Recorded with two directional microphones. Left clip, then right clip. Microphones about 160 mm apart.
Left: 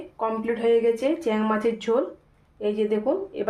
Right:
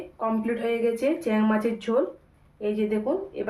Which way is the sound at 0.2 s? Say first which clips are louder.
Left 2 dB; 45° left (ahead or behind).